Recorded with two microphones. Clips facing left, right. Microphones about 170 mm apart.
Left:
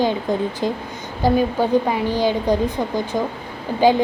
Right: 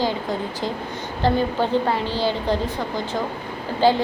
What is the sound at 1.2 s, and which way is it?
A woman's voice, 10° left (ahead or behind).